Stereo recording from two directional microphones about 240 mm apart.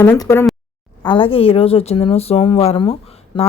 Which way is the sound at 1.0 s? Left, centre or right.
Centre.